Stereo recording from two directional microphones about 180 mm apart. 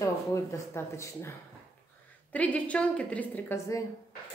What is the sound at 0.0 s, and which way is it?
A woman's voice, 15° left (ahead or behind).